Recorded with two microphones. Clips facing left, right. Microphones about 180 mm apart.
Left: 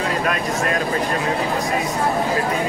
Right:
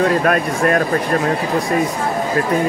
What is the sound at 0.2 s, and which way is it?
Speech, 50° right (ahead or behind).